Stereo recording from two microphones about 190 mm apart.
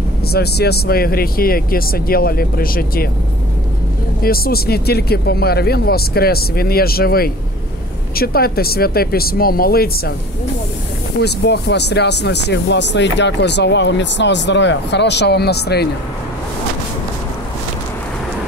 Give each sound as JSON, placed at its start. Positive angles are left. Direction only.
{"t": 0.3, "sound": "speech", "side_deg": 60}
{"t": 4.2, "sound": "speech", "side_deg": 55}
{"t": 11.1, "sound": "speech", "side_deg": 60}